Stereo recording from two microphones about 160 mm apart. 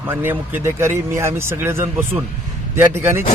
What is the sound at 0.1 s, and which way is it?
Speech, 15° right (ahead or behind).